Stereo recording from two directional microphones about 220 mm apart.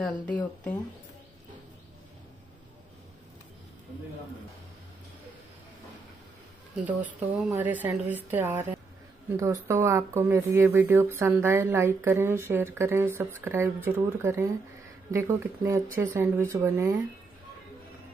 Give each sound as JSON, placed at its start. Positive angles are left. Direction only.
{"t": 0.0, "sound": "speech", "side_deg": 5}
{"t": 6.8, "sound": "speech", "side_deg": -5}